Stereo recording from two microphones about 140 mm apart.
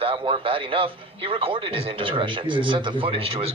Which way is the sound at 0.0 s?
40° right (ahead or behind).